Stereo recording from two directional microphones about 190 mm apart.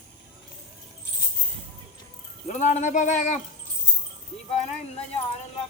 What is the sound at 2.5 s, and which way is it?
Speech, 40° left (ahead or behind).